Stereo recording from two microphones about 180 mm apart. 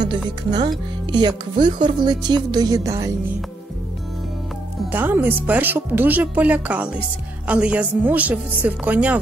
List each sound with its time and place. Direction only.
0.4 s speech: 20° right (ahead or behind)
4.9 s a woman's voice: 10° right (ahead or behind)